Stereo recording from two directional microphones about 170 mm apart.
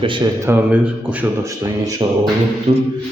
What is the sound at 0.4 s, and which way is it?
Speech, 10° right (ahead or behind).